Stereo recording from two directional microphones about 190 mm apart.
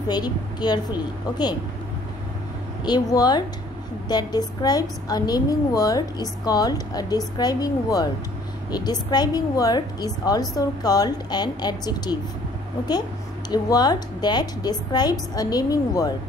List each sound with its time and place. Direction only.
0.1 s a woman's voice: 20° left (ahead or behind)
2.8 s a woman's voice: 20° left (ahead or behind)
13.5 s a woman's voice: 20° left (ahead or behind)